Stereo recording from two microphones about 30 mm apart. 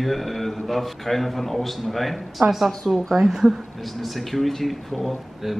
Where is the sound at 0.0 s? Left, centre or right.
Centre.